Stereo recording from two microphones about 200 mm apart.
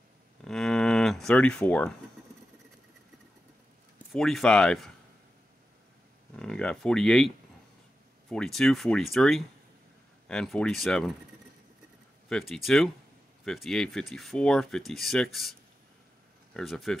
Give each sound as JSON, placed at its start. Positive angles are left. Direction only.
{"t": 0.4, "sound": "cattle", "side_deg": 0}
{"t": 4.1, "sound": "speech", "side_deg": 0}
{"t": 6.3, "sound": "speech", "side_deg": 5}
{"t": 12.3, "sound": "speech", "side_deg": 0}
{"t": 16.5, "sound": "speech", "side_deg": 0}